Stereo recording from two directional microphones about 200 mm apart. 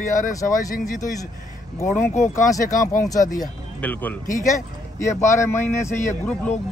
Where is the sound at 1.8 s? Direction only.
15° left (ahead or behind).